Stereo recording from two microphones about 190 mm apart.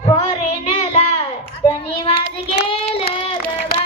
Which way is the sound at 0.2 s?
35° left (ahead or behind).